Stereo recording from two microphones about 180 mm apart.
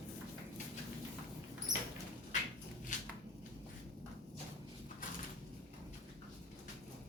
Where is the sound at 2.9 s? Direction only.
45° left (ahead or behind).